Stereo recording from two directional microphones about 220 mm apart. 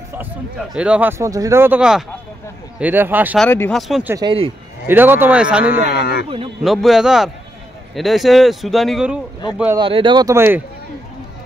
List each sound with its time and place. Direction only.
0.7 s speech: 5° right (ahead or behind)
3.3 s speech: 10° left (ahead or behind)
4.1 s speech: 20° right (ahead or behind)
4.8 s speech: 10° right (ahead or behind)
5.7 s speech: 45° left (ahead or behind)
6.6 s speech: centre (ahead or behind)
9.8 s speech: 25° right (ahead or behind)